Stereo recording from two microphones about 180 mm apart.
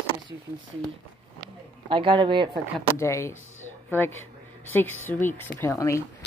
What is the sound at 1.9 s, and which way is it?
Speech, 25° right (ahead or behind).